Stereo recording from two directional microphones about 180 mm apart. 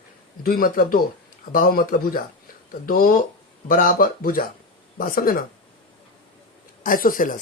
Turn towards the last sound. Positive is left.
turn(degrees=50)  # may be behind; listen again after turning